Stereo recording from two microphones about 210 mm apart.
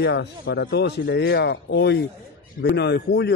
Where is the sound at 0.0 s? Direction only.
55° left (ahead or behind).